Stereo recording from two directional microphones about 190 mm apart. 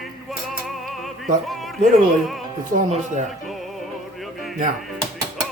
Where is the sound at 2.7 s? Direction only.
45° right (ahead or behind).